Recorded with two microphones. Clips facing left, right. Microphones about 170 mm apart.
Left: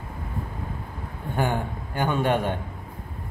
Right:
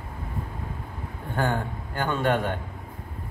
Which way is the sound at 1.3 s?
15° left (ahead or behind).